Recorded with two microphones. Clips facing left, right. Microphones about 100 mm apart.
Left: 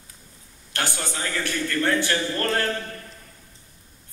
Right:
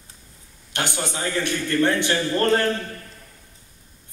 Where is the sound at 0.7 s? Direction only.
20° right (ahead or behind).